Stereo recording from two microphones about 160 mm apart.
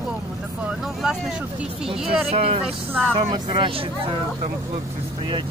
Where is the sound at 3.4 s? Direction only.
30° right (ahead or behind).